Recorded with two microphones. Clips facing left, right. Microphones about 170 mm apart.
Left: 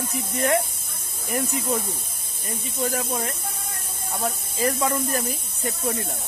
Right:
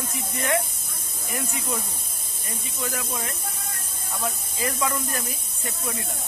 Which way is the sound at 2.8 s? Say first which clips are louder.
Left 5 dB; 40° left (ahead or behind).